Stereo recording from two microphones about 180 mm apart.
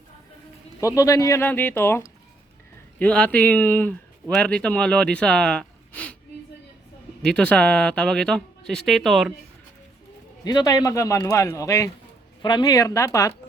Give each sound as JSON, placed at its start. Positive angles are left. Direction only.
{"t": 0.8, "sound": "a man's voice", "side_deg": 15}
{"t": 7.2, "sound": "speech", "side_deg": 5}
{"t": 10.4, "sound": "a man's voice", "side_deg": 20}